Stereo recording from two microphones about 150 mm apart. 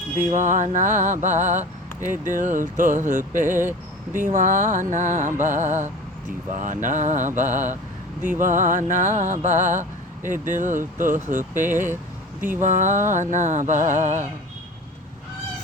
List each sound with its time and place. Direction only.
0.3 s music: 60° right (ahead or behind)